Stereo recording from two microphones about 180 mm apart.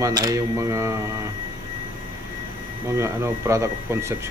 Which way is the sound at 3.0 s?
15° right (ahead or behind).